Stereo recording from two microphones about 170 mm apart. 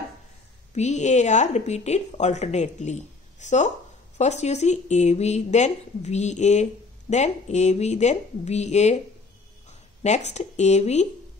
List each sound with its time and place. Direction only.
0.7 s speech: 45° left (ahead or behind)